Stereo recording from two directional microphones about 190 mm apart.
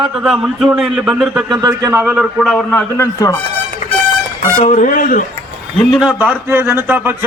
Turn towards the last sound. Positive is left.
turn(degrees=-10)  # may be behind; listen again after turning